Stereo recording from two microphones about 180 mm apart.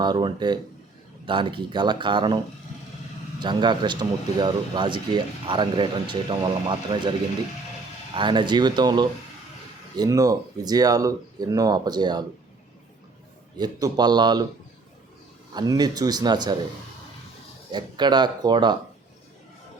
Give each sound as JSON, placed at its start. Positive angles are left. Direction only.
{"t": 0.0, "sound": "speech", "side_deg": -25}
{"t": 2.7, "sound": "vehicle", "side_deg": 40}
{"t": 3.4, "sound": "speech", "side_deg": -25}
{"t": 8.1, "sound": "speech", "side_deg": -25}
{"t": 13.6, "sound": "speech", "side_deg": -20}
{"t": 15.5, "sound": "speech", "side_deg": -20}
{"t": 17.7, "sound": "speech", "side_deg": -25}